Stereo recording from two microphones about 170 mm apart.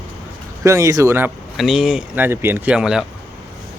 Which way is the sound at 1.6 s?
Centre (ahead or behind).